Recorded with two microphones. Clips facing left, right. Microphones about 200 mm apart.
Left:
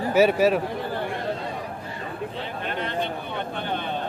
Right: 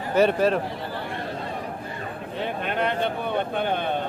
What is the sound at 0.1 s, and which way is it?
Speech, 5° left (ahead or behind).